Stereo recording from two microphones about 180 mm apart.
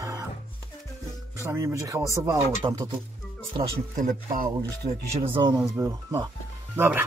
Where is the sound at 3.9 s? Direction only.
45° right (ahead or behind).